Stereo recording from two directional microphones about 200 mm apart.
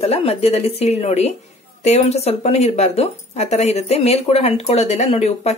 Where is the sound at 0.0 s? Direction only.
30° left (ahead or behind).